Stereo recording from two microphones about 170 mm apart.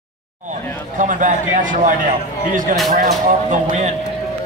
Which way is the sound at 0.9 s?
50° right (ahead or behind).